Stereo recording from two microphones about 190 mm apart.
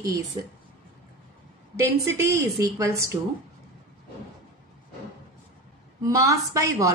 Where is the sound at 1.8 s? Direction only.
15° right (ahead or behind).